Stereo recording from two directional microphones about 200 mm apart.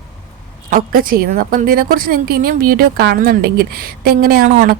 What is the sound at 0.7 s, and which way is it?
A woman's voice, 45° right (ahead or behind).